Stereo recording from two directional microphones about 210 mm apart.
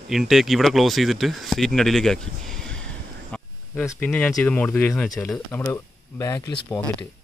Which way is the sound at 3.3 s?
5° left (ahead or behind).